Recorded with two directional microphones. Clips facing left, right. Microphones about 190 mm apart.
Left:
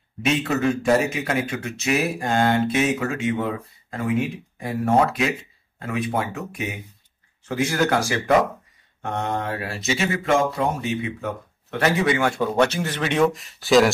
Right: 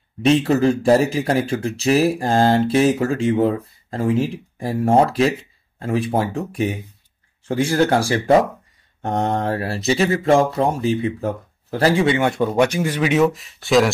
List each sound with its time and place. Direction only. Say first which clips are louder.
0.2 s speech: right 6 dB; 35° right (ahead or behind)
12.5 s speech: right 3 dB; 10° right (ahead or behind)